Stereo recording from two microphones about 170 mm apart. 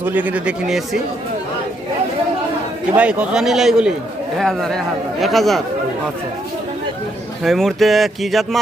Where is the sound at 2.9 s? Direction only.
5° right (ahead or behind).